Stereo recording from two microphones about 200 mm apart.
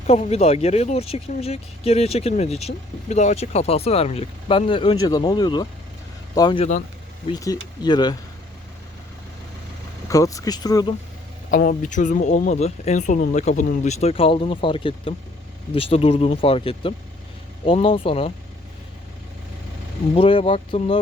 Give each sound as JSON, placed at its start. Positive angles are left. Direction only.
{"t": 0.1, "sound": "speech", "side_deg": 30}
{"t": 10.1, "sound": "speech", "side_deg": 15}
{"t": 11.5, "sound": "speech", "side_deg": 45}
{"t": 20.1, "sound": "speech", "side_deg": 30}